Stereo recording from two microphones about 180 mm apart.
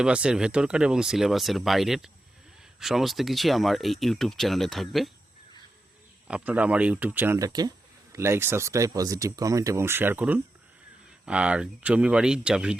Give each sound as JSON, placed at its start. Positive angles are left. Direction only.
{"t": 0.0, "sound": "speech", "side_deg": -5}
{"t": 6.2, "sound": "speech", "side_deg": -5}